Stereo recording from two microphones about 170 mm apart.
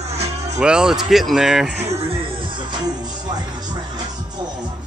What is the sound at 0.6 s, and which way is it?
Speech, 5° right (ahead or behind).